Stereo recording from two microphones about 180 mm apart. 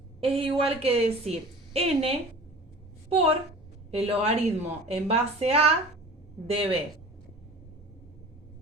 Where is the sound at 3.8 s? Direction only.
35° right (ahead or behind).